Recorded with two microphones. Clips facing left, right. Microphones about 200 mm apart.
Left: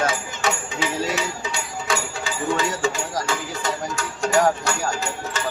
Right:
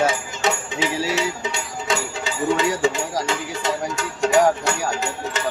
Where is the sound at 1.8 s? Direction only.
20° right (ahead or behind).